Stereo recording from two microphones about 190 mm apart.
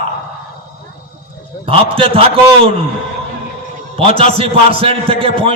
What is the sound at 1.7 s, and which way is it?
A man's voice, 30° right (ahead or behind).